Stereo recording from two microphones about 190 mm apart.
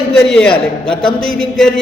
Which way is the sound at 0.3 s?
5° left (ahead or behind).